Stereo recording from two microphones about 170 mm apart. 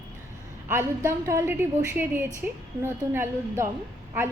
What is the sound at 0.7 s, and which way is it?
Speech, 15° right (ahead or behind).